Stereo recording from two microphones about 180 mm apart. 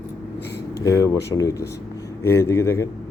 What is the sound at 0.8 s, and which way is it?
Speech, 20° left (ahead or behind).